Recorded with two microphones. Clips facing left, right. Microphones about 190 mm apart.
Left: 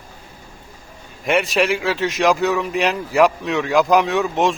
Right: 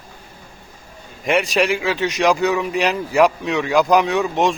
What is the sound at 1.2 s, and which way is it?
Speech, centre (ahead or behind).